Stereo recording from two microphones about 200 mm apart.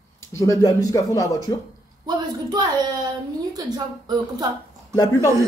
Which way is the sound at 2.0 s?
20° right (ahead or behind).